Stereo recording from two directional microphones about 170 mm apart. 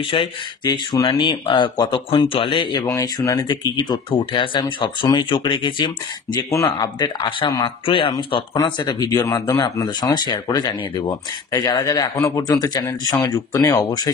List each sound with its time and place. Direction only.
0.0 s speech: 30° left (ahead or behind)